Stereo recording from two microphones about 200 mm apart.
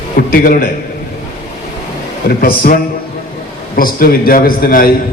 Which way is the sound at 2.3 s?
50° left (ahead or behind).